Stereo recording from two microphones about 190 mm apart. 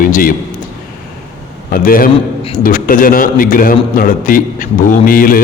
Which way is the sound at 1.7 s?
50° left (ahead or behind).